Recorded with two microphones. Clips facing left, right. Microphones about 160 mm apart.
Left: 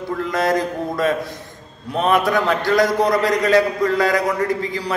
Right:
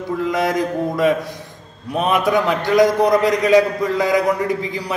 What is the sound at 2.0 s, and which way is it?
A man's voice, 15° right (ahead or behind).